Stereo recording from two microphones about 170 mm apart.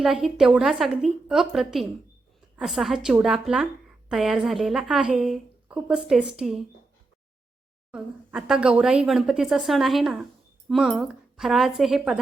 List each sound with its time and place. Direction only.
0.0 s a woman's voice: 5° right (ahead or behind)
7.9 s a woman's voice: 5° right (ahead or behind)